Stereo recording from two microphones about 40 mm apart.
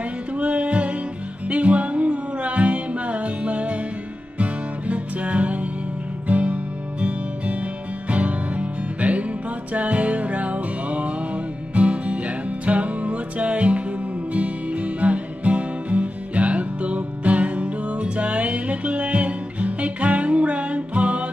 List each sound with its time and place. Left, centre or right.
0.4 s music: right